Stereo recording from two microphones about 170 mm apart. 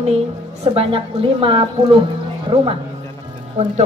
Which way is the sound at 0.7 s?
30° right (ahead or behind).